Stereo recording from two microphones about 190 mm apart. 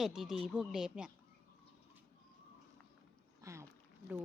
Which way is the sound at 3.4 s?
15° right (ahead or behind).